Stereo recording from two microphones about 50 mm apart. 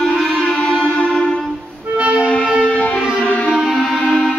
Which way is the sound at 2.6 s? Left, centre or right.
Left.